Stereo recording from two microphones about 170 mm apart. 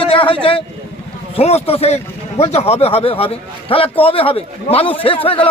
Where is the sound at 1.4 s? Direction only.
35° left (ahead or behind).